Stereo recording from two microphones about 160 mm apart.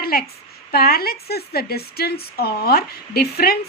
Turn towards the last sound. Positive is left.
turn(degrees=75)  # may be behind; listen again after turning